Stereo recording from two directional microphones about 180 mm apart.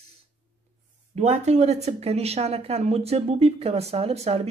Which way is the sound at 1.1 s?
40° right (ahead or behind).